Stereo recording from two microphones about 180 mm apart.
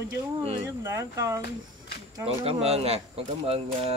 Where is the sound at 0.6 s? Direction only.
15° right (ahead or behind).